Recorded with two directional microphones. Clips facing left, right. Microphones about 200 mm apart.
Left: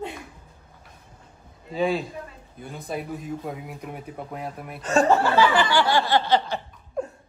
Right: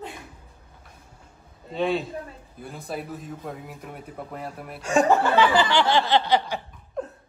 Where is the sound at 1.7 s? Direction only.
Centre (ahead or behind).